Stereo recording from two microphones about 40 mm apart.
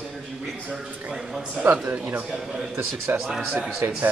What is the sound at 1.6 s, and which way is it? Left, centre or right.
A man's voice, right.